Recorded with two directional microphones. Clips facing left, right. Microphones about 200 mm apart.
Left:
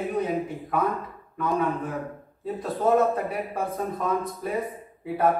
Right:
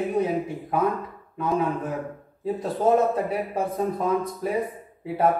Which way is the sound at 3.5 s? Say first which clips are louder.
Right 3 dB; 20° right (ahead or behind).